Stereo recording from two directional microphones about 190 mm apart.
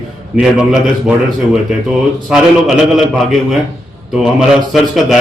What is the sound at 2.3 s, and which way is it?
Speech, 5° right (ahead or behind).